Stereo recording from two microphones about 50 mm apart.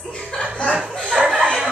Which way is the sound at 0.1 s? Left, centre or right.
Centre.